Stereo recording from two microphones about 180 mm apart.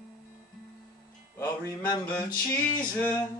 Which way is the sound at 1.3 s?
15° left (ahead or behind).